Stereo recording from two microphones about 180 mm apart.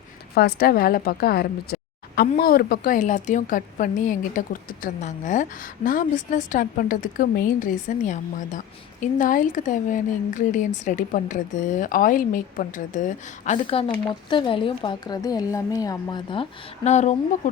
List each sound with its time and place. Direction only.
0.3 s a woman's voice: 60° left (ahead or behind); by 16.5 s 25° left (ahead or behind)
16.8 s speech: 40° left (ahead or behind)